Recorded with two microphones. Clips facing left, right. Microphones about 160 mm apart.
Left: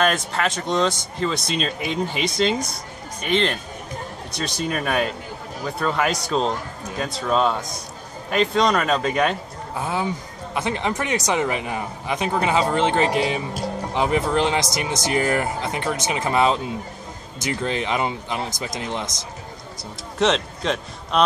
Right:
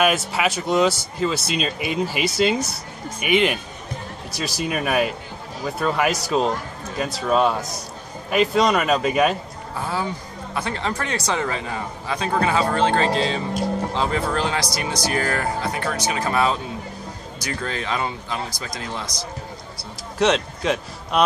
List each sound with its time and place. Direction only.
0.0 s a man's voice: 5° right (ahead or behind)
9.8 s speech: 20° left (ahead or behind)
20.2 s a man's voice: centre (ahead or behind)